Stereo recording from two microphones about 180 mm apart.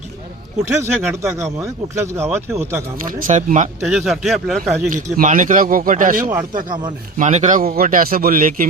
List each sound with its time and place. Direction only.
0.8 s speech: 15° right (ahead or behind)
3.2 s a man's voice: 45° right (ahead or behind)
3.8 s speech: 5° right (ahead or behind)
5.1 s a man's voice: 50° right (ahead or behind)
6.7 s speech: 25° right (ahead or behind)
7.2 s a man's voice: 40° right (ahead or behind)